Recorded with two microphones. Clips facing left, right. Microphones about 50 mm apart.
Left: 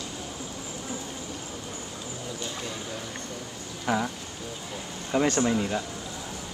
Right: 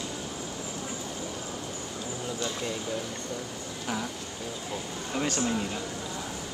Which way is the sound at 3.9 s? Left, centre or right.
Left.